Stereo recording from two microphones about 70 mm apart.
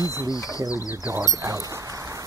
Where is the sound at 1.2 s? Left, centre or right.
Right.